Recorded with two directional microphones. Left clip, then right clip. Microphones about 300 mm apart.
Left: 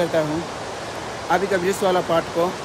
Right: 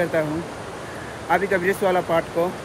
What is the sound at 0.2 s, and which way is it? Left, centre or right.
Speech, centre.